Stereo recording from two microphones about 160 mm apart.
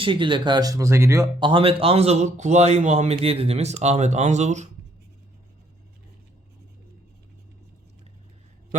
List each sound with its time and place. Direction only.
0.0 s speech: 30° right (ahead or behind)
1.4 s speech: 30° right (ahead or behind)